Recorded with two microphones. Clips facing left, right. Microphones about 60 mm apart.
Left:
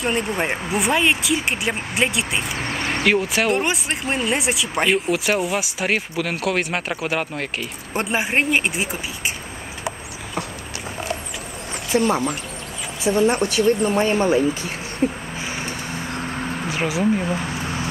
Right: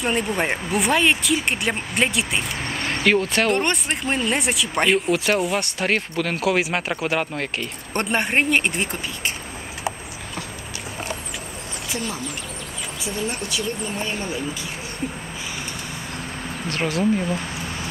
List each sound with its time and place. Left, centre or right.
0.0 s speech: centre
11.9 s speech: left
13.0 s speech: left
13.4 s speech: left
16.6 s speech: centre